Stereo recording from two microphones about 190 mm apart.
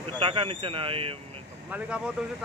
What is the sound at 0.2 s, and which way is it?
Speech, 30° right (ahead or behind).